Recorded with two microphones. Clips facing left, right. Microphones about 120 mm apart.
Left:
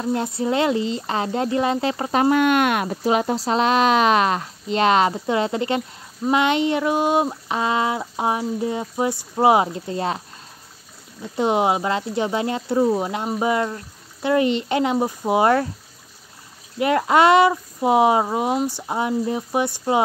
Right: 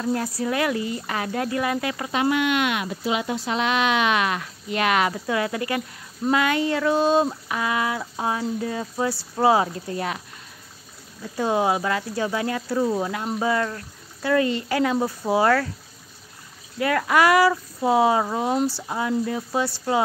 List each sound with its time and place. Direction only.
0.0 s speech: 25° left (ahead or behind)
7.4 s speech: 25° left (ahead or behind)
11.3 s speech: 20° left (ahead or behind)
16.8 s speech: 25° left (ahead or behind)